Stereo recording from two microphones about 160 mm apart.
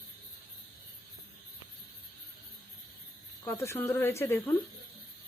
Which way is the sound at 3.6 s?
15° left (ahead or behind).